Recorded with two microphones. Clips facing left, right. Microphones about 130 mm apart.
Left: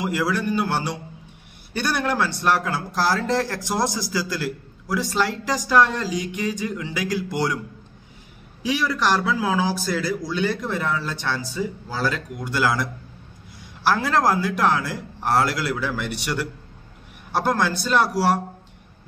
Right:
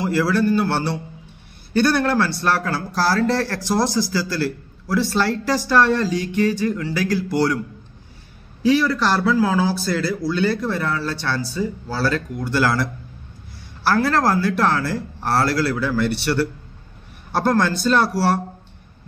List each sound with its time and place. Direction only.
0.0 s a man's voice: 15° left (ahead or behind)
8.6 s speech: 15° left (ahead or behind)